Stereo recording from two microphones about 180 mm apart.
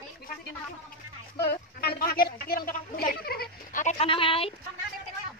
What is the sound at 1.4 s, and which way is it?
A woman's voice, 60° left (ahead or behind).